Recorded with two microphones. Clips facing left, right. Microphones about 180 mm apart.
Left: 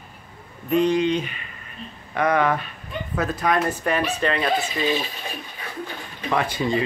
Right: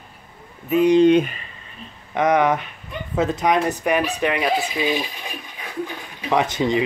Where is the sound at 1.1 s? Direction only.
55° right (ahead or behind).